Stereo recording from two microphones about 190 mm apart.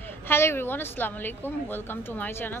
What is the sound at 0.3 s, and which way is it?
A woman's voice, 15° left (ahead or behind).